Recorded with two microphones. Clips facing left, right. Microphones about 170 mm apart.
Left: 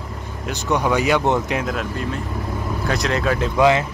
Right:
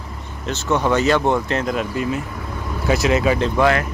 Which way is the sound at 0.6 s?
10° left (ahead or behind).